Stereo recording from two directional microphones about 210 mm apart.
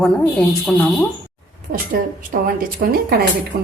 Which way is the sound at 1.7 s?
40° right (ahead or behind).